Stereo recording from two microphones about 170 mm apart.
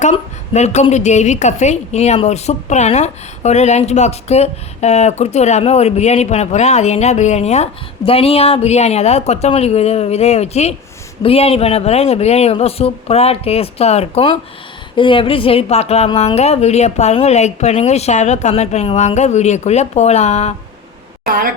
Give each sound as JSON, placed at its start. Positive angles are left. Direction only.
{"t": 0.0, "sound": "a woman's voice", "side_deg": 40}
{"t": 21.2, "sound": "speech", "side_deg": -60}